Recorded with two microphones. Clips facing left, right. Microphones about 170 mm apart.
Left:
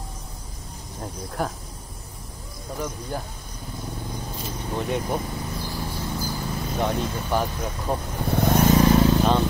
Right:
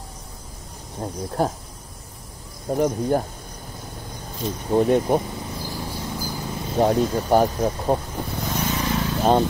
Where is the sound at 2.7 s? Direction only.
45° right (ahead or behind).